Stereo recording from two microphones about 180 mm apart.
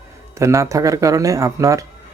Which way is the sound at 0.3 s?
15° right (ahead or behind).